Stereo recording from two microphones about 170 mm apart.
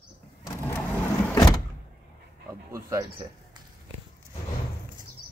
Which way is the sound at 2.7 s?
20° right (ahead or behind).